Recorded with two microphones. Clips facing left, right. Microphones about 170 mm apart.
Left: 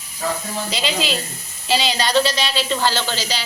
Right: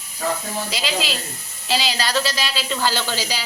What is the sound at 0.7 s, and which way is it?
A woman's voice, centre (ahead or behind).